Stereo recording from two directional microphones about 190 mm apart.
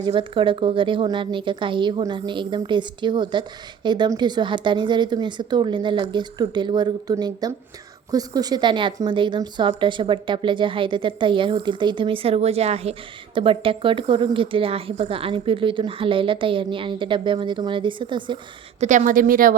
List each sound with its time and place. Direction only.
0.0 s a woman's voice: 25° right (ahead or behind)
18.8 s a woman's voice: 40° right (ahead or behind)